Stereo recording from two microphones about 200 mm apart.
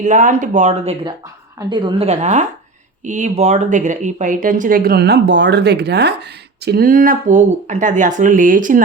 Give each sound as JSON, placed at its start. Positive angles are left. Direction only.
{"t": 0.0, "sound": "speech", "side_deg": -40}
{"t": 1.5, "sound": "a woman's voice", "side_deg": -20}